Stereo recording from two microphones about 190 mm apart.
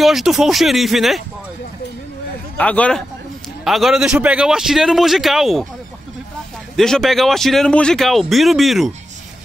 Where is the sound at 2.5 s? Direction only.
5° left (ahead or behind).